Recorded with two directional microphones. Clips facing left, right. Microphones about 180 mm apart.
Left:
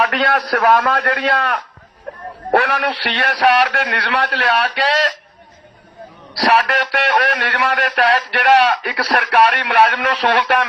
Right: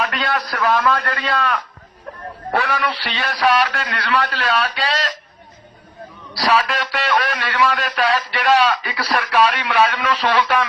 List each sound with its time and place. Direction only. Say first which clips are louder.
0.0 s a man's voice: left 5 dB; 65° left (ahead or behind)
6.3 s a man's voice: left 3 dB; 60° left (ahead or behind)